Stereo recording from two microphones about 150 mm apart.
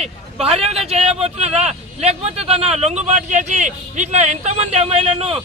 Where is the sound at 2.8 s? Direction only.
50° right (ahead or behind).